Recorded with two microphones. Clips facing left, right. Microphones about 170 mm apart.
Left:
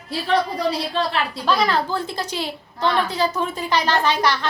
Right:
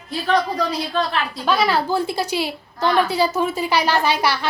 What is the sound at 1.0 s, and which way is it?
Speech, 30° left (ahead or behind).